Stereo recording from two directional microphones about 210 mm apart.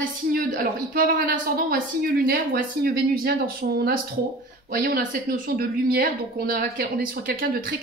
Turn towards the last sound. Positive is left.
turn(degrees=-40)  # may be behind; listen again after turning